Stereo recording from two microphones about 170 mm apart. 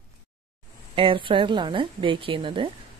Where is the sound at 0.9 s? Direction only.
30° right (ahead or behind).